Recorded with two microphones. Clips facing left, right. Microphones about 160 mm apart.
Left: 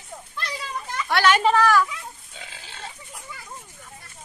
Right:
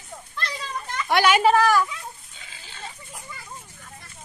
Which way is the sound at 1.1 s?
10° right (ahead or behind).